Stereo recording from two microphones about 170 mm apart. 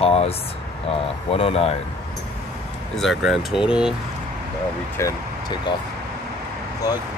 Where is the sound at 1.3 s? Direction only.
35° left (ahead or behind).